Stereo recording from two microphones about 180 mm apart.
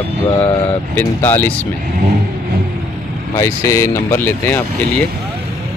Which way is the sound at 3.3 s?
15° left (ahead or behind).